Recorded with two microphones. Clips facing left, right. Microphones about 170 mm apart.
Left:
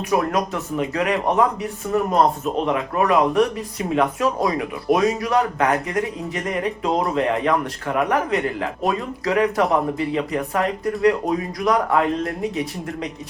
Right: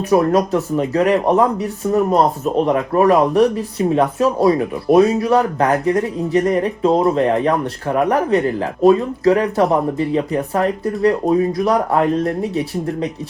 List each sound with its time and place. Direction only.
0.0 s speech: 30° right (ahead or behind)